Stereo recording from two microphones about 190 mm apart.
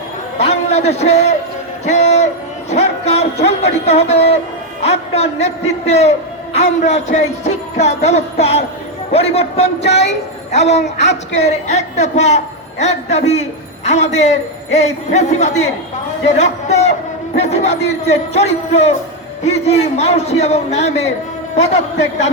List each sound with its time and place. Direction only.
0.3 s a man's voice: 35° left (ahead or behind)
9.8 s a woman's voice: 65° left (ahead or behind)
10.5 s a man's voice: 35° left (ahead or behind)